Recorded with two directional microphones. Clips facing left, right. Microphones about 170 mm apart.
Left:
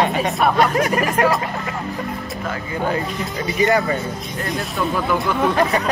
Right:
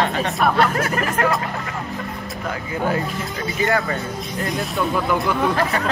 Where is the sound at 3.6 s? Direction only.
15° left (ahead or behind).